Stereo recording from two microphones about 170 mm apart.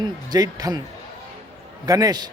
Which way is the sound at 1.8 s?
20° right (ahead or behind).